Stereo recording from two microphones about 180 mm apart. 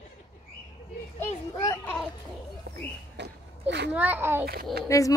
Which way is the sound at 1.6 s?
15° left (ahead or behind).